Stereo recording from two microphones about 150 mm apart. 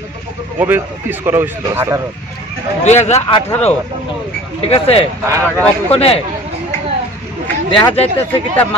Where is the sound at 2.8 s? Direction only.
45° left (ahead or behind).